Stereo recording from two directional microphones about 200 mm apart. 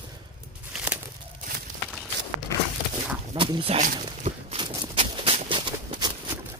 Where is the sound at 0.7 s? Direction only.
10° right (ahead or behind).